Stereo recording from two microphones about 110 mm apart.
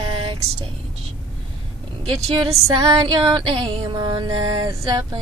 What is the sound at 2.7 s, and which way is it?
Music, 35° right (ahead or behind).